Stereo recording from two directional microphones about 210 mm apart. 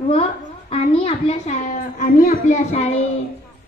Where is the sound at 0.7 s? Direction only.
30° left (ahead or behind).